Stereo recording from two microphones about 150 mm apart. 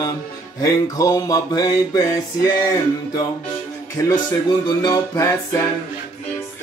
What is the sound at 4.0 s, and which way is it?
Speech, 25° left (ahead or behind).